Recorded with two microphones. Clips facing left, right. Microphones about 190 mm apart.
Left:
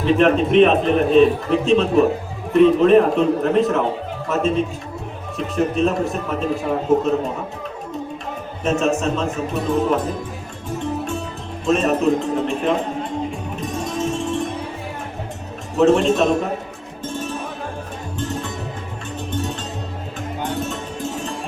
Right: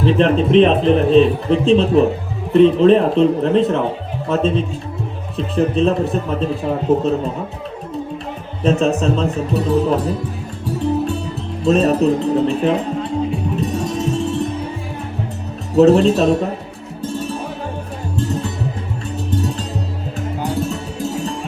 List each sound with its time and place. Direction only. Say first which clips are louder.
0.0 s speech: right 1 dB; 30° right (ahead or behind)
8.6 s speech: right 3 dB; 35° right (ahead or behind)
11.6 s speech: right 3 dB; 35° right (ahead or behind)
13.6 s music: even; 35° right (ahead or behind)
15.7 s speech: right 4 dB; 35° right (ahead or behind)
17.0 s music: right 3 dB; 35° right (ahead or behind)
20.6 s music: right 4 dB; 35° right (ahead or behind)